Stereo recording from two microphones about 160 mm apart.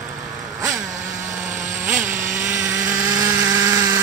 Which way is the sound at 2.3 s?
15° right (ahead or behind).